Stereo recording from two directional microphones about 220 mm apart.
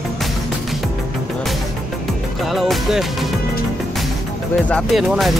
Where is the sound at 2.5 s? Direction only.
Centre (ahead or behind).